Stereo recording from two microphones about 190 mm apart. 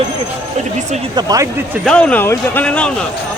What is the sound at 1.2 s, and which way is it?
Speech, 20° right (ahead or behind).